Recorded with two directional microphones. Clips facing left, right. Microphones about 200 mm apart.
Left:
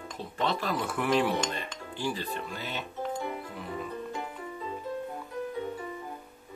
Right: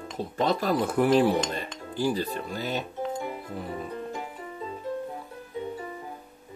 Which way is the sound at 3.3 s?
35° right (ahead or behind).